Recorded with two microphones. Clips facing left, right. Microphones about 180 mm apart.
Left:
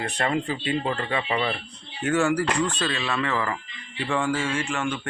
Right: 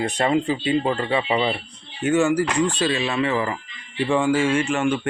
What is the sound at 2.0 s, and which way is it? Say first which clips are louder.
Speech: right 4 dB; 5° right (ahead or behind).